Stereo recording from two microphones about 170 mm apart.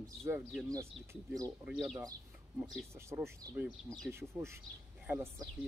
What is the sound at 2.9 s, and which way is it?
Speech, 15° right (ahead or behind).